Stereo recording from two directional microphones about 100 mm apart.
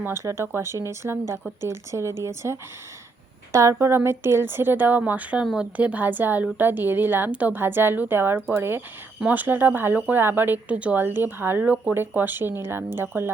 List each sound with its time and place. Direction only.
0.0 s speech: 25° right (ahead or behind)